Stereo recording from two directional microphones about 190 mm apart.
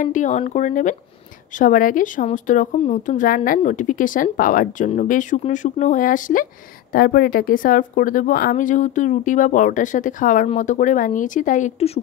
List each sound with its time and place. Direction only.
0.0 s speech: 40° left (ahead or behind)